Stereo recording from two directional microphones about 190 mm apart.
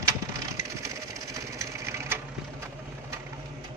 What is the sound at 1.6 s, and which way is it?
Sewing machine, 15° right (ahead or behind).